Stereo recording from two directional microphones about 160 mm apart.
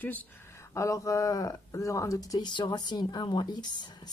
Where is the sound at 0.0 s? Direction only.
10° left (ahead or behind).